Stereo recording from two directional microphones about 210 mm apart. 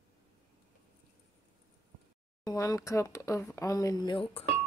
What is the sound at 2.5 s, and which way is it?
Speech, 15° left (ahead or behind).